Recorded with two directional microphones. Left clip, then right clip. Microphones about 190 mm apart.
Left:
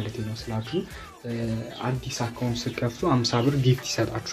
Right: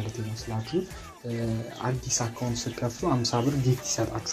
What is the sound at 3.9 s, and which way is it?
Speech, 30° left (ahead or behind).